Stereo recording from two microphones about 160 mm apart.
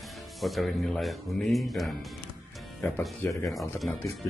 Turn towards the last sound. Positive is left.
turn(degrees=0)  # may be behind; listen again after turning